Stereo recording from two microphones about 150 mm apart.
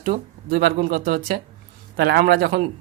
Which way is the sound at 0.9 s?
70° right (ahead or behind).